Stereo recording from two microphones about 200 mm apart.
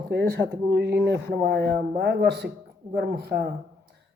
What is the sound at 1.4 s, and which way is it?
Speech, 55° right (ahead or behind).